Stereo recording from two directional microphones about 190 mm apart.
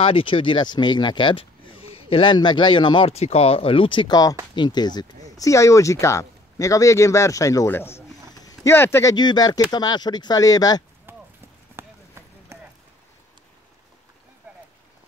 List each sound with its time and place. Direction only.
0.0 s speech: 30° left (ahead or behind)
11.1 s clip-clop: 10° right (ahead or behind)
11.7 s run: 15° right (ahead or behind)